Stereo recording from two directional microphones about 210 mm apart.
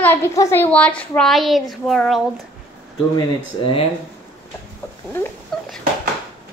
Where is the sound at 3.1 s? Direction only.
25° left (ahead or behind).